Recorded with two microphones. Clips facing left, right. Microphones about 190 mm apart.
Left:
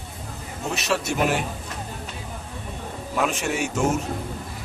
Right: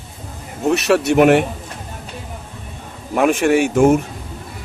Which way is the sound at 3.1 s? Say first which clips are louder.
Right 11 dB; 55° right (ahead or behind).